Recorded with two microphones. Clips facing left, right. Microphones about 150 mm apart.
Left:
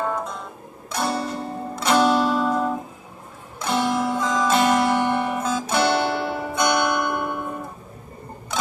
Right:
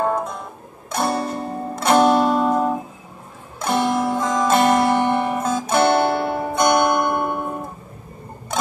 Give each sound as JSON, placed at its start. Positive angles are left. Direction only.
{"t": 0.0, "sound": "music", "side_deg": -50}
{"t": 0.8, "sound": "zither", "side_deg": -50}
{"t": 3.5, "sound": "music", "side_deg": -50}